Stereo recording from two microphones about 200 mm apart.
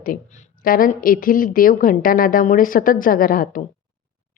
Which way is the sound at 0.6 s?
45° left (ahead or behind).